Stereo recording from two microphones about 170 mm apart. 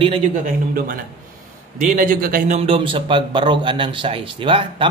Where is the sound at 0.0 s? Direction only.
35° right (ahead or behind).